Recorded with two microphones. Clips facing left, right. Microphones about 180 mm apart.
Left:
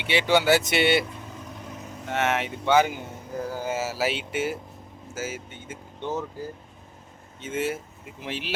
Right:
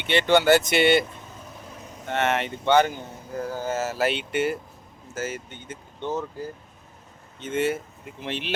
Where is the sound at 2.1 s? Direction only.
5° left (ahead or behind).